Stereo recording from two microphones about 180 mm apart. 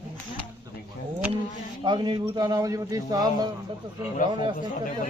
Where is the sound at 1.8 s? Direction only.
25° right (ahead or behind).